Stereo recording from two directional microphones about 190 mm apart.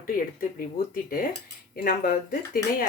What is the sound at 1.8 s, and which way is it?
Speech, 50° left (ahead or behind).